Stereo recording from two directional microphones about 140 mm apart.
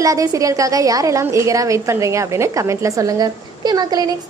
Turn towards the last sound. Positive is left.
turn(degrees=-30)  # may be behind; listen again after turning